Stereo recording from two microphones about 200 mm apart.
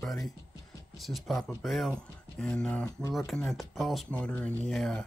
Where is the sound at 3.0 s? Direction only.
15° left (ahead or behind).